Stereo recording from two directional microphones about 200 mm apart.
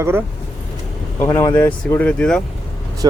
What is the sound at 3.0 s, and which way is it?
Speech, 20° right (ahead or behind).